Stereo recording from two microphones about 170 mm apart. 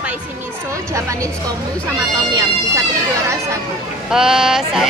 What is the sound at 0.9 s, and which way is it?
A woman's voice, 20° right (ahead or behind).